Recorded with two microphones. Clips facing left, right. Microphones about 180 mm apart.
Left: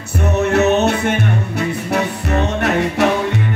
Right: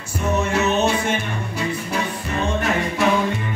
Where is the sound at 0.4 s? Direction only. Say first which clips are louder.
Left 7 dB; 65° left (ahead or behind).